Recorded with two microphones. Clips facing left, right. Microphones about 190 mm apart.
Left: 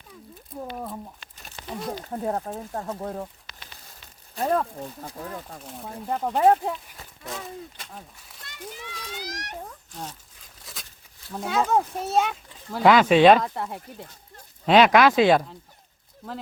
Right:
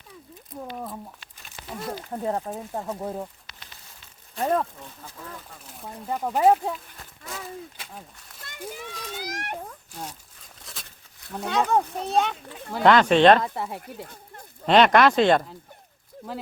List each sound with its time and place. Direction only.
1.7 s speech: centre (ahead or behind)
4.4 s speech: centre (ahead or behind)
4.8 s speech: 35° left (ahead or behind)
5.6 s speech: centre (ahead or behind)
8.4 s children playing: 50° right (ahead or behind)
9.9 s speech: 10° right (ahead or behind)
10.6 s a sound: centre (ahead or behind)
11.3 s speech: 5° left (ahead or behind)